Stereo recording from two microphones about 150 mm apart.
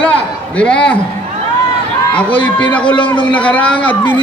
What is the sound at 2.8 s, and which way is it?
Speech, 35° left (ahead or behind).